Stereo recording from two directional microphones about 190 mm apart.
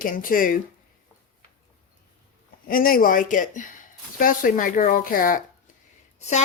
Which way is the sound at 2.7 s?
50° left (ahead or behind).